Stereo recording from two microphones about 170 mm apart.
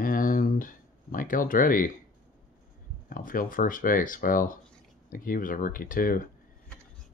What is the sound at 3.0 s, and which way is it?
Speech, 55° left (ahead or behind).